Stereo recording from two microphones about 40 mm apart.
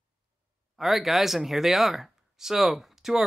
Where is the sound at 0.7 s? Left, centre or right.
Centre.